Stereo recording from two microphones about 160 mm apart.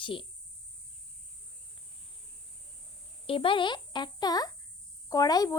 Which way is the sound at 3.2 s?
35° left (ahead or behind).